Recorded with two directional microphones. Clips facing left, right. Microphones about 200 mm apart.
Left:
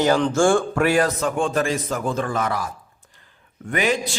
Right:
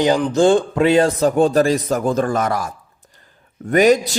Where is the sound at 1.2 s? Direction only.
35° right (ahead or behind).